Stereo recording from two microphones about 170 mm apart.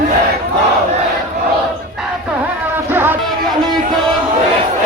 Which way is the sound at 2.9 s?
15° right (ahead or behind).